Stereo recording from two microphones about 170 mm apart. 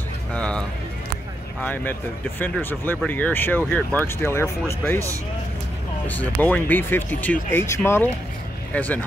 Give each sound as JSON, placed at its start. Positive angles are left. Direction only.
{"t": 0.3, "sound": "music", "side_deg": 5}
{"t": 1.6, "sound": "speech", "side_deg": 10}
{"t": 6.0, "sound": "speech", "side_deg": 10}